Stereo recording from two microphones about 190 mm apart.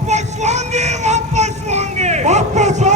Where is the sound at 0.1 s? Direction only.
35° right (ahead or behind).